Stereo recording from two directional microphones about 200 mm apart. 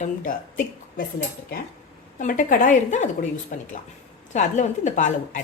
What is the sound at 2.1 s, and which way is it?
A woman's voice, 40° left (ahead or behind).